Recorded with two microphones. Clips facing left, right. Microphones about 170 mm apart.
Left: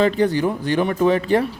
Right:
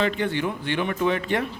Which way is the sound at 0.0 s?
40° left (ahead or behind).